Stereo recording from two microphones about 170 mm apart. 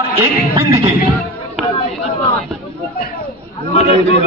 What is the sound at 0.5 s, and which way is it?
Music, 30° right (ahead or behind).